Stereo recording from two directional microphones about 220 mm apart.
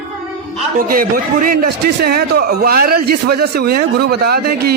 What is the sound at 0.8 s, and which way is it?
Speech, 40° right (ahead or behind).